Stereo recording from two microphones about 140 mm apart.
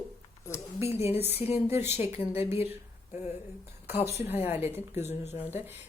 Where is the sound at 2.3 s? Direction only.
45° left (ahead or behind).